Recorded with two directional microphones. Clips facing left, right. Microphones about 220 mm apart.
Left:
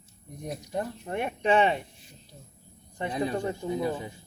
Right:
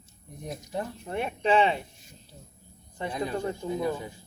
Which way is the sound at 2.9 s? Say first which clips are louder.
Left 2 dB; 25° left (ahead or behind).